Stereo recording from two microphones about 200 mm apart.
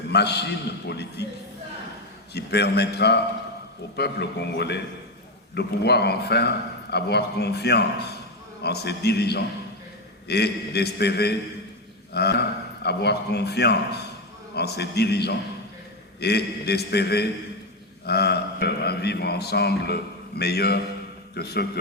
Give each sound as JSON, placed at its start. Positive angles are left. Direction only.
{"t": 0.1, "sound": "a man's voice", "side_deg": 55}
{"t": 2.3, "sound": "a man's voice", "side_deg": 55}